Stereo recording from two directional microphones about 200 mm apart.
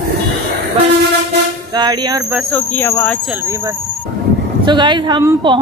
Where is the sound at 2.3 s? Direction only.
5° left (ahead or behind).